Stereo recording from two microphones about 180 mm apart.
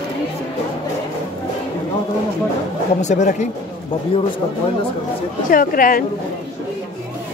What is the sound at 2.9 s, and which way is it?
Speech, 40° left (ahead or behind).